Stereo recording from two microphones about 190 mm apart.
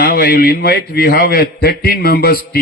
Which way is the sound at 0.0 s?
55° left (ahead or behind).